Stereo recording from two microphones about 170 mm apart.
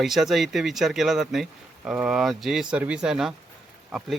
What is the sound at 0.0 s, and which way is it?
Speech, centre (ahead or behind).